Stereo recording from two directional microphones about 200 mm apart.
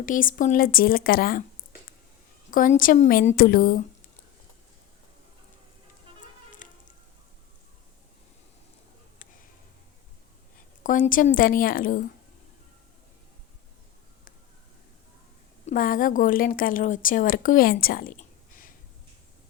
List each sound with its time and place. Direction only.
0.0 s a woman's voice: 45° left (ahead or behind)
2.5 s a woman's voice: 45° left (ahead or behind)
6.6 s a sound: 40° left (ahead or behind)
10.8 s a woman's voice: 40° left (ahead or behind)
15.6 s a woman's voice: 45° left (ahead or behind)